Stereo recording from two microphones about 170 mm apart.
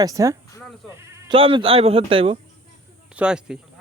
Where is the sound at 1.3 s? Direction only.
30° right (ahead or behind).